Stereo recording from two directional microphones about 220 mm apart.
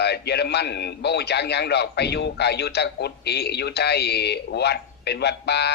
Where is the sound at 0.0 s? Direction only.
50° left (ahead or behind).